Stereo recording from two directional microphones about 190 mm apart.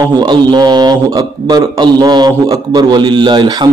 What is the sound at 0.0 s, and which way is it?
A man's voice, 20° right (ahead or behind).